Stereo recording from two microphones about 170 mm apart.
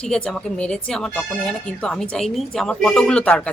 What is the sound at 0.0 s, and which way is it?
Speech, 5° left (ahead or behind).